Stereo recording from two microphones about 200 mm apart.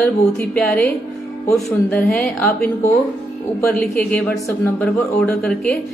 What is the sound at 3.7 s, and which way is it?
Speech, 5° left (ahead or behind).